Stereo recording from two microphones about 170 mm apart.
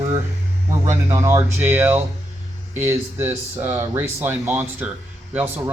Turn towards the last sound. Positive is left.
turn(degrees=-10)  # may be behind; listen again after turning